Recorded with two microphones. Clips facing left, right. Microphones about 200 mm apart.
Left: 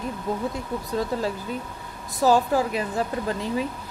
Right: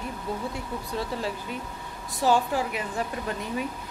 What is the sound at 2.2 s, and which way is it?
Speech, 40° left (ahead or behind).